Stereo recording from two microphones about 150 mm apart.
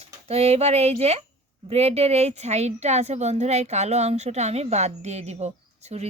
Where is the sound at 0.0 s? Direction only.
45° right (ahead or behind).